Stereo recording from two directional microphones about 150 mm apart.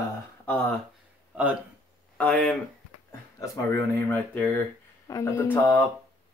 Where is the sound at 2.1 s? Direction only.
10° left (ahead or behind).